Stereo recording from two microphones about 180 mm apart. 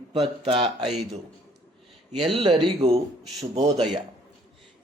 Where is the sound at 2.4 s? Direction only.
25° right (ahead or behind).